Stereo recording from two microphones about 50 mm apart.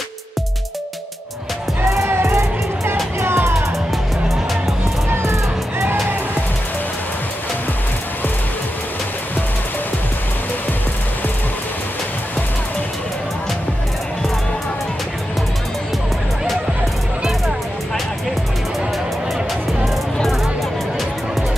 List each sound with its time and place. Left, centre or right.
2.0 s music: right
5.2 s music: right
19.8 s music: centre